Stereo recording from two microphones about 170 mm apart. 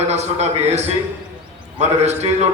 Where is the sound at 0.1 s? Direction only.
40° right (ahead or behind).